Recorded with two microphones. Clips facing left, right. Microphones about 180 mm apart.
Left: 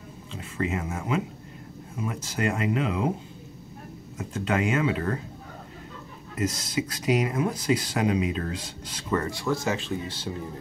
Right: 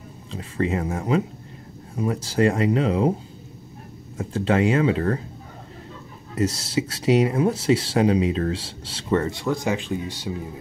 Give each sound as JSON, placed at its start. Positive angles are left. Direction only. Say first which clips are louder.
{"t": 0.3, "sound": "speech", "louder": "right 5 dB", "side_deg": -35}
{"t": 4.2, "sound": "speech", "louder": "right 6 dB", "side_deg": -30}
{"t": 6.3, "sound": "speech", "louder": "right 4 dB", "side_deg": -30}